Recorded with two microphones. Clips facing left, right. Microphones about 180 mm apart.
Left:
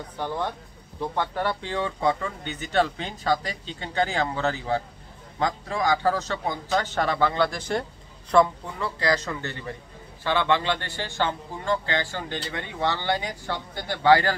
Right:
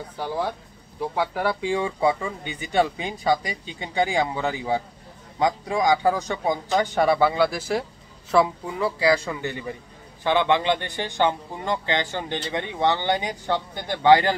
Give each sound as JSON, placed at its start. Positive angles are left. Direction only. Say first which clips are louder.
{"t": 0.2, "sound": "a man's voice", "louder": "right 2 dB", "side_deg": -5}